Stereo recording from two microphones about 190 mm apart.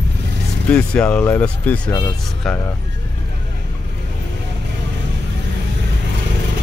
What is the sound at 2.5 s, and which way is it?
Speech, centre (ahead or behind).